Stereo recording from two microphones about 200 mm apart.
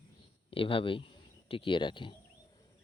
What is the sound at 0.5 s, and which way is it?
Speech, 25° left (ahead or behind).